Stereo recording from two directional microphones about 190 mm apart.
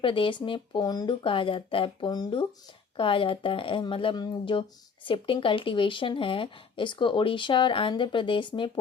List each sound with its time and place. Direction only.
0.0 s speech: 25° left (ahead or behind)